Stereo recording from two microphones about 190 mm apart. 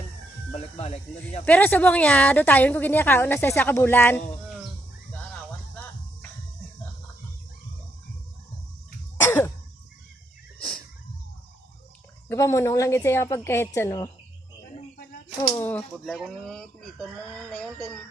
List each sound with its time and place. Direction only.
0.8 s speech: 35° left (ahead or behind)
1.5 s a woman's voice: 10° left (ahead or behind)
9.2 s throat clearing: 15° left (ahead or behind)
12.3 s a woman's voice: 15° left (ahead or behind)
15.4 s speech: 15° left (ahead or behind)